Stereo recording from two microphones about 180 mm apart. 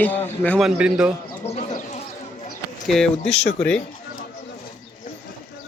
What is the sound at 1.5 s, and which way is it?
Sheep, 40° left (ahead or behind).